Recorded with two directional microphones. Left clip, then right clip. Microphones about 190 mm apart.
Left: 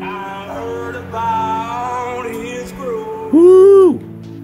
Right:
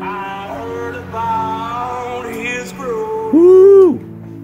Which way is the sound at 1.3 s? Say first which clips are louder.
Left 2 dB; centre (ahead or behind).